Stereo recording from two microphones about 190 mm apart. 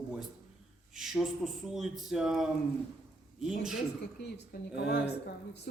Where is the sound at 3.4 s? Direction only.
Centre (ahead or behind).